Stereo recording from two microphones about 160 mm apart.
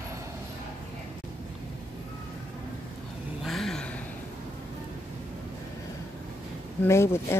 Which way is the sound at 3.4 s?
Centre (ahead or behind).